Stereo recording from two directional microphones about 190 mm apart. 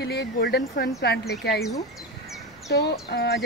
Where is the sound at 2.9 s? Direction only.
60° left (ahead or behind).